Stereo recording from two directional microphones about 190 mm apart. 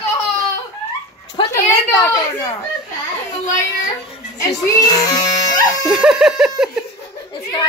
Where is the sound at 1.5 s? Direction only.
15° left (ahead or behind).